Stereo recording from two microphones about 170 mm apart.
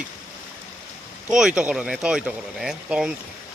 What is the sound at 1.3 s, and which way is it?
Speech, 5° right (ahead or behind).